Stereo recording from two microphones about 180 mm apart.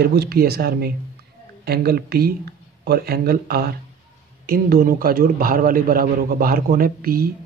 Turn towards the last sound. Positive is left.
turn(degrees=-55)  # may be behind; listen again after turning